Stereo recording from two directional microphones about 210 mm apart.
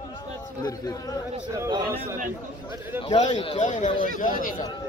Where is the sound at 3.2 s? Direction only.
25° left (ahead or behind).